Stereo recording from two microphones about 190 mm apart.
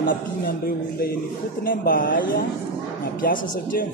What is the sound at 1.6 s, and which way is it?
A man's voice, 50° left (ahead or behind).